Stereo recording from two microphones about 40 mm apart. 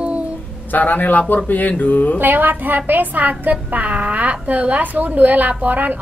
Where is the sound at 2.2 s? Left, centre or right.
Right.